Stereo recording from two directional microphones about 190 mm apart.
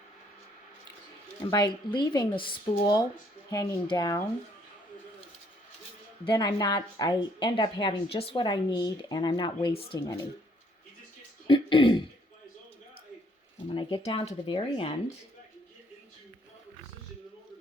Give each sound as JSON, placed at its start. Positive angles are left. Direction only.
{"t": 1.5, "sound": "a woman's voice", "side_deg": 20}
{"t": 6.2, "sound": "a woman's voice", "side_deg": 25}
{"t": 11.4, "sound": "speech", "side_deg": 25}
{"t": 13.7, "sound": "a woman's voice", "side_deg": 30}